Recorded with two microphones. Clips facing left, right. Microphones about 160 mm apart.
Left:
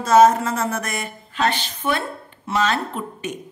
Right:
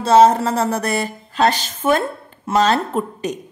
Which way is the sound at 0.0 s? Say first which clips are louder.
Right 2 dB; 30° right (ahead or behind).